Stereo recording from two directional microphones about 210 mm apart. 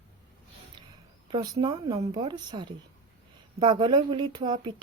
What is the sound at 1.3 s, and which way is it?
Speech, 20° right (ahead or behind).